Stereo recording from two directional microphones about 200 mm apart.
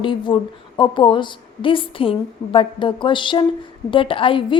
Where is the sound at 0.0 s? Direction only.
25° left (ahead or behind).